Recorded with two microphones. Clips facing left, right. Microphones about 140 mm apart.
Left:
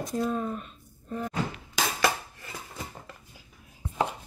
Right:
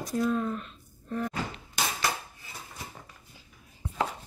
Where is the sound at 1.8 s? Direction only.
90° left.